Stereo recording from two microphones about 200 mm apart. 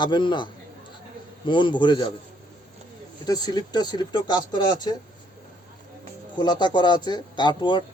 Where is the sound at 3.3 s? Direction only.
20° left (ahead or behind).